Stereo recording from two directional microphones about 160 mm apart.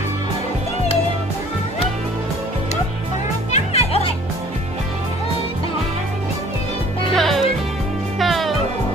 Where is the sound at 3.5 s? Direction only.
40° left (ahead or behind).